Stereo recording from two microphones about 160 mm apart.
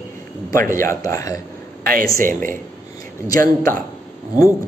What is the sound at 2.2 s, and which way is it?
Speech, 60° right (ahead or behind).